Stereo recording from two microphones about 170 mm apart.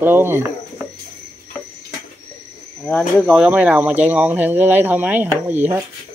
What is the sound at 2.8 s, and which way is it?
Speech, centre (ahead or behind).